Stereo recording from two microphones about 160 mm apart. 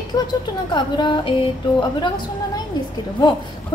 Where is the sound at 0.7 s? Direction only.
30° left (ahead or behind).